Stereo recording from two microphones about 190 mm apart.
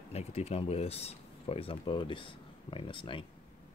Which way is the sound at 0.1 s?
35° left (ahead or behind).